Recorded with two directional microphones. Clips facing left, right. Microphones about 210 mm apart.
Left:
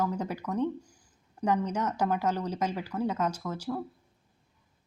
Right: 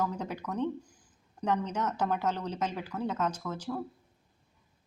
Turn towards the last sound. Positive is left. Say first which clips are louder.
# left 2 dB
turn(degrees=10)  # may be behind; listen again after turning